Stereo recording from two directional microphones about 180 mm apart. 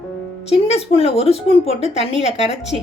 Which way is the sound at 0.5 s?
35° left (ahead or behind).